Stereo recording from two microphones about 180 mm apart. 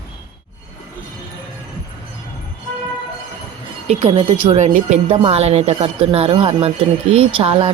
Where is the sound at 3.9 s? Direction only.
35° right (ahead or behind).